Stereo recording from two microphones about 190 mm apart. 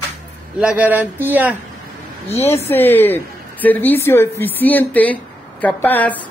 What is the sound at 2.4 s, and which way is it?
A woman's voice, 10° left (ahead or behind).